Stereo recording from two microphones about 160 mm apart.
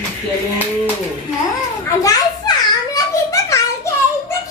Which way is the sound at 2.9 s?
20° left (ahead or behind).